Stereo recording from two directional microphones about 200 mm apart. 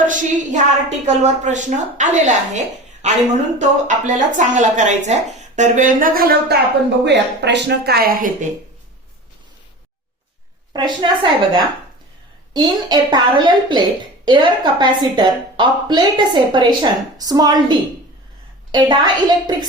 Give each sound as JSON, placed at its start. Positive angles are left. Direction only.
{"t": 0.0, "sound": "a woman's voice", "side_deg": -40}
{"t": 7.0, "sound": "speech", "side_deg": -60}
{"t": 10.7, "sound": "a woman's voice", "side_deg": -20}